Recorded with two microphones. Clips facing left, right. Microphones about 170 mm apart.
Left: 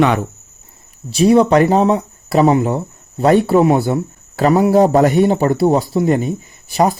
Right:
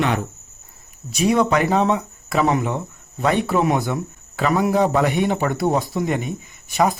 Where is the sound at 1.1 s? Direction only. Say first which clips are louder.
Left 7 dB; 30° left (ahead or behind).